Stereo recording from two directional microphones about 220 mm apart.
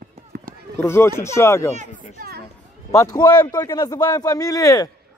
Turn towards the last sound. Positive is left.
turn(degrees=15)  # may be behind; listen again after turning